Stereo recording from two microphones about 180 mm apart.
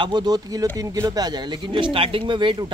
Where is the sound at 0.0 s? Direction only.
25° right (ahead or behind).